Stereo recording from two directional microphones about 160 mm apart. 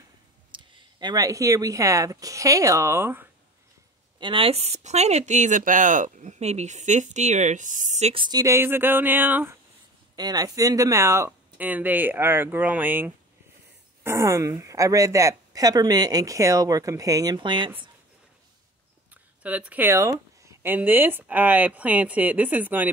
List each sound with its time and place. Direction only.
0.5 s speech: 30° right (ahead or behind); by 3.3 s 15° right (ahead or behind)
4.2 s speech: 30° right (ahead or behind)
8.2 s speech: 25° right (ahead or behind)
10.1 s a woman's voice: 25° right (ahead or behind)
19.4 s speech: 10° right (ahead or behind)